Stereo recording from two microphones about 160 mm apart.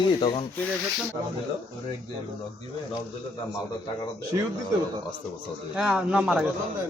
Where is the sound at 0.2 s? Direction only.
30° left (ahead or behind).